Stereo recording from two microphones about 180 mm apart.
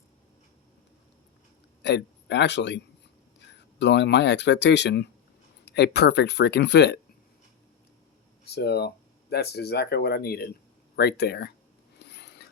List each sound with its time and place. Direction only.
1.8 s a man's voice: 70° left (ahead or behind)
8.4 s speech: 60° left (ahead or behind)
11.9 s filing: 65° left (ahead or behind)